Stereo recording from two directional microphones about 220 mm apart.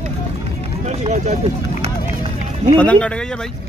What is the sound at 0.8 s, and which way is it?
Run, 30° right (ahead or behind).